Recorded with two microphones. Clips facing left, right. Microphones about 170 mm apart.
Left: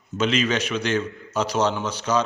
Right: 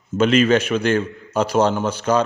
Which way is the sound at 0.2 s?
50° right (ahead or behind).